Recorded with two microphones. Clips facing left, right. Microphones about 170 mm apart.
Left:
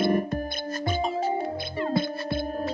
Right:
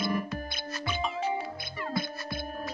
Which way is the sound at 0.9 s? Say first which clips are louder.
Left 5 dB; 40° left (ahead or behind).